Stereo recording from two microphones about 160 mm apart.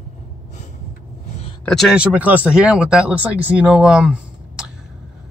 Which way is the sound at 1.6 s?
Centre (ahead or behind).